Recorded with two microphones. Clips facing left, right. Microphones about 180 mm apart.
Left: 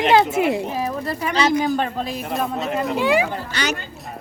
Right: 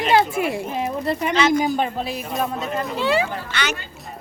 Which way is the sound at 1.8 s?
5° right (ahead or behind).